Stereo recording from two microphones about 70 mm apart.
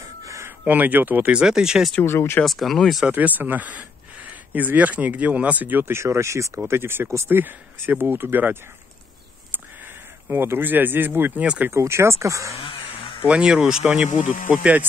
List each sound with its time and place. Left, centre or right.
0.2 s a sound: right
0.7 s speech: right
1.4 s speech: centre
2.0 s speech: left
2.4 s speech: centre
3.1 s speech: right
6.7 s speech: right
10.2 s speech: right
11.4 s speech: centre
11.7 s speech: right
13.3 s speech: centre
14.5 s speech: right